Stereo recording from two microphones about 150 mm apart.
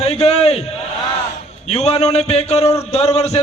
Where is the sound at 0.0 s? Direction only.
45° left (ahead or behind).